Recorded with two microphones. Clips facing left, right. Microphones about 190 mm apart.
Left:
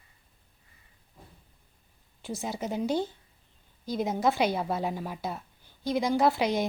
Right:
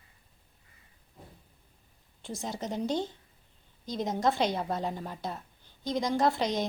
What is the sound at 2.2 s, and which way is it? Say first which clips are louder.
A woman's voice: left 3 dB; 5° left (ahead or behind).